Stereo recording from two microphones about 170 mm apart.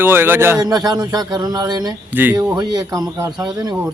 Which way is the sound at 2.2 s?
10° right (ahead or behind).